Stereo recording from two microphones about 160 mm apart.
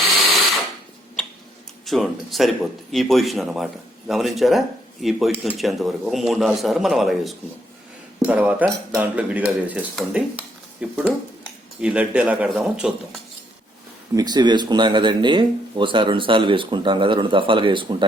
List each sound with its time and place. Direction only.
0.0 s a sound: centre (ahead or behind)
1.8 s a man's voice: centre (ahead or behind)
14.2 s speech: 25° right (ahead or behind)